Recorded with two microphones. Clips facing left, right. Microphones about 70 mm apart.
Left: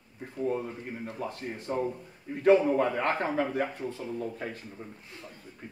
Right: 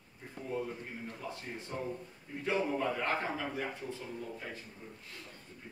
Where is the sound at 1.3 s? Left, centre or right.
Left.